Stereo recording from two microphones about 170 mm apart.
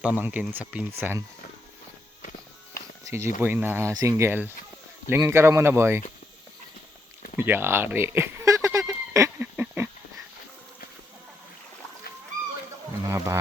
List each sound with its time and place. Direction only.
0.0 s speech: 10° right (ahead or behind)
3.0 s speech: 15° right (ahead or behind)
7.3 s a sound: 15° right (ahead or behind)
13.1 s wild animals: 15° right (ahead or behind)